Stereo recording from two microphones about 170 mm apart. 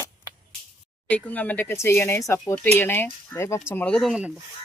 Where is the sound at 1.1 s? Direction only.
10° left (ahead or behind).